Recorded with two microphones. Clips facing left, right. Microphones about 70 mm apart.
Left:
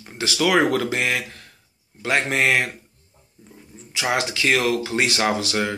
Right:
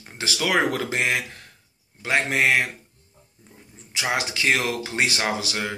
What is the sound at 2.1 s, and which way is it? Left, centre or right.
Speech, centre.